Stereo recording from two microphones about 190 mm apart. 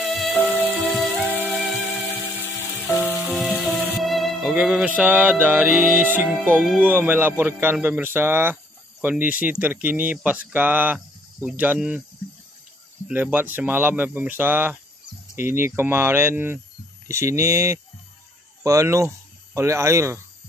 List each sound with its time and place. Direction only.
0.1 s music: 5° left (ahead or behind)
1.1 s music: 10° right (ahead or behind)
1.5 s music: 10° left (ahead or behind)
2.9 s music: 5° right (ahead or behind)
6.4 s speech: 5° left (ahead or behind)
13.1 s speech: 10° right (ahead or behind)